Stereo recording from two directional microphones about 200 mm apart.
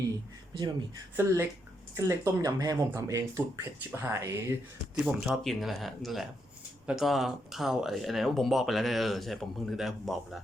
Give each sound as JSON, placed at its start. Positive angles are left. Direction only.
{"t": 1.1, "sound": "speech", "side_deg": -15}
{"t": 4.9, "sound": "speech", "side_deg": -5}